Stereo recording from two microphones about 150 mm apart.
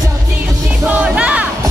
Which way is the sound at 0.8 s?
10° right (ahead or behind).